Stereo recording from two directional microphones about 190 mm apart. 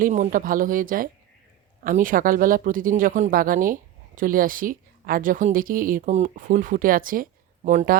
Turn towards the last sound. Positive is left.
turn(degrees=-45)  # may be behind; listen again after turning